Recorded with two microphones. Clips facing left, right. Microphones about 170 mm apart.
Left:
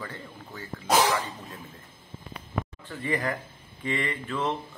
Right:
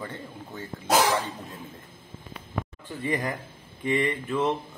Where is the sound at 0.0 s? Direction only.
25° right (ahead or behind).